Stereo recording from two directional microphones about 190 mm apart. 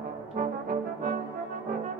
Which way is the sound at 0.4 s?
45° right (ahead or behind).